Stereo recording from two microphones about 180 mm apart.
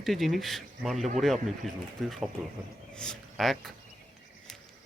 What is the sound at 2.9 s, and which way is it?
Speech, centre (ahead or behind).